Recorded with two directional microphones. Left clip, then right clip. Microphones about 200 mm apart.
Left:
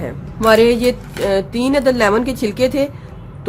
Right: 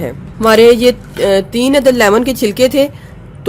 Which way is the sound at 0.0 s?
35° right (ahead or behind).